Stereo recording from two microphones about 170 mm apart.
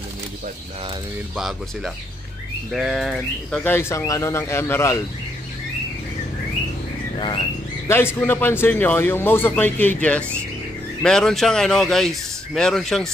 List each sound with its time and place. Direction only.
2.7 s speech: centre (ahead or behind)
3.7 s a man's voice: 20° left (ahead or behind)
7.2 s speech: 30° left (ahead or behind)
7.9 s a man's voice: 15° left (ahead or behind)